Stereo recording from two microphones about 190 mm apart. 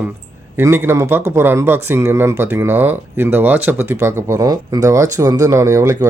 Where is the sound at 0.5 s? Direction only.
15° right (ahead or behind).